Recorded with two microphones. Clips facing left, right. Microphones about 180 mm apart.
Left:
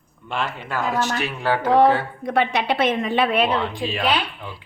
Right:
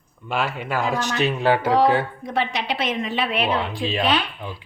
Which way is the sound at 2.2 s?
55° left (ahead or behind).